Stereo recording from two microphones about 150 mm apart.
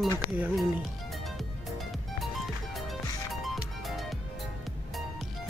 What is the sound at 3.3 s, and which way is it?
Music, centre (ahead or behind).